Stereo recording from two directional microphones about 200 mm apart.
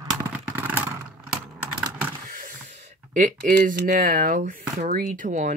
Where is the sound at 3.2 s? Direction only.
40° right (ahead or behind).